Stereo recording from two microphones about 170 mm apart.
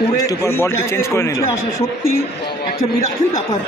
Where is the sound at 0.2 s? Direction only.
20° left (ahead or behind).